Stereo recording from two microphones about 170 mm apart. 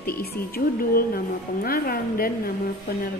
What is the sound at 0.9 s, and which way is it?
A woman's voice, 60° left (ahead or behind).